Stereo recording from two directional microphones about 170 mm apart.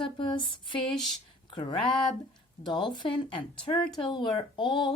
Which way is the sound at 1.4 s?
25° left (ahead or behind).